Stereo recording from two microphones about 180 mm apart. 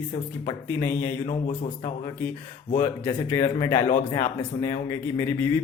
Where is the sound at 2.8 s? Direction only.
15° left (ahead or behind).